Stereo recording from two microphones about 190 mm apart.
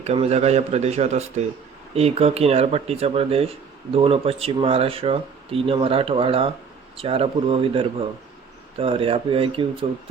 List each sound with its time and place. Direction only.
0.0 s speech: 35° right (ahead or behind)